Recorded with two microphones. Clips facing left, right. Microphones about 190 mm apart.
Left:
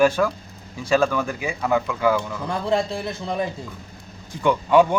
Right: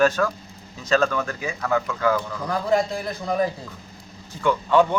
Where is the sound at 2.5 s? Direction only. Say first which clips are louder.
Right 1 dB; 30° left (ahead or behind).